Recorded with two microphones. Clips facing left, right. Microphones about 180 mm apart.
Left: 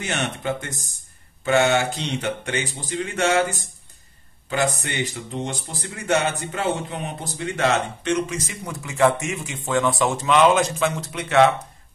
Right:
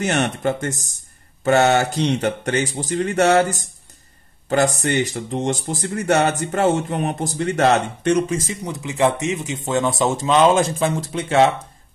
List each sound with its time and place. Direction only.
0.0 s speech: 45° right (ahead or behind)
7.3 s speech: 40° right (ahead or behind)
8.6 s a man's voice: 20° right (ahead or behind)